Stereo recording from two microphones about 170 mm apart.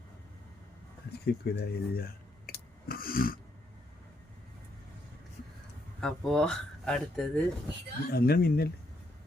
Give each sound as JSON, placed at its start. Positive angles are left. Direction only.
{"t": 1.2, "sound": "speech", "side_deg": 70}
{"t": 2.5, "sound": "a sound", "side_deg": 60}
{"t": 6.0, "sound": "speech", "side_deg": 5}
{"t": 8.1, "sound": "speech", "side_deg": 65}